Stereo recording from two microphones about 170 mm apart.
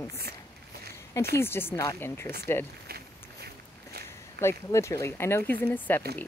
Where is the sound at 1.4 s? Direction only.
15° left (ahead or behind).